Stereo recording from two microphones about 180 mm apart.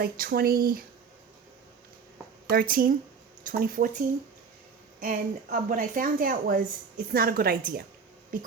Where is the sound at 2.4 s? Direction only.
55° right (ahead or behind).